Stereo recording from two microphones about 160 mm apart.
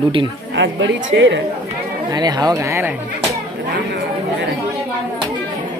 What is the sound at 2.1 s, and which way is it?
Speech, 25° right (ahead or behind).